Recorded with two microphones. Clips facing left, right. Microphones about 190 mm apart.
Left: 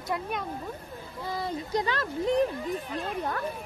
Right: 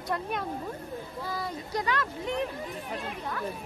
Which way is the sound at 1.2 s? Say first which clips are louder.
Left 6 dB; 20° left (ahead or behind).